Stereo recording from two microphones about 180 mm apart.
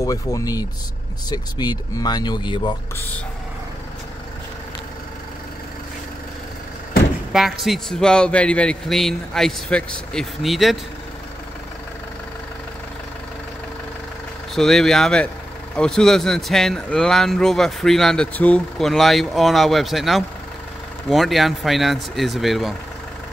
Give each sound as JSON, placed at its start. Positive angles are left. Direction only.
{"t": 0.0, "sound": "speech", "side_deg": 20}
{"t": 7.3, "sound": "speech", "side_deg": 0}
{"t": 14.5, "sound": "speech", "side_deg": 0}